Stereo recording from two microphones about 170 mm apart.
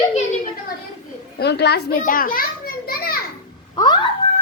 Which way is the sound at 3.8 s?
25° left (ahead or behind).